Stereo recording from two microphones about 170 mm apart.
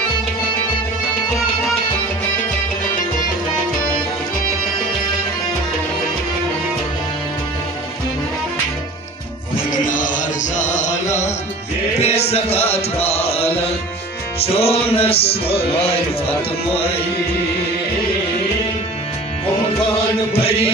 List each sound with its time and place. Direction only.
9.8 s chant: 50° left (ahead or behind)
12.0 s music: 35° left (ahead or behind)
20.3 s music: 35° left (ahead or behind)